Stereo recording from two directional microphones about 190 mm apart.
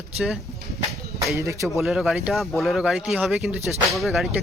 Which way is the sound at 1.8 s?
Centre (ahead or behind).